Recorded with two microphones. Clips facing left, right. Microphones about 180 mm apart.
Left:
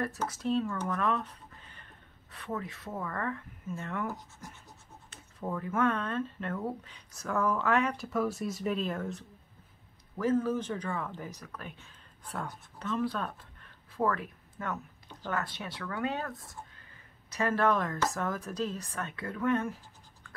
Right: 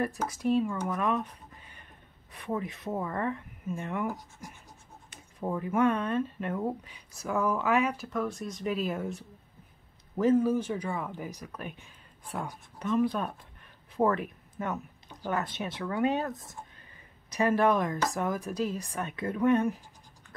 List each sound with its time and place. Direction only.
0.0 s speech: 15° right (ahead or behind)
8.1 s speech: 5° left (ahead or behind)
8.7 s speech: 10° right (ahead or behind)